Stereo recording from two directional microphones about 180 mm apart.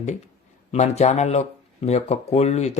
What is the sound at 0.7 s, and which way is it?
Speech, 40° left (ahead or behind).